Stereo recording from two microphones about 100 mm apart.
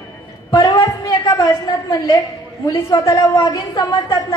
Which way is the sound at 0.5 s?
50° left (ahead or behind).